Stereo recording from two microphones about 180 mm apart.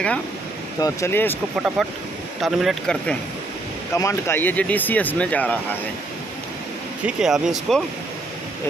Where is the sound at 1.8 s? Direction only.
Centre (ahead or behind).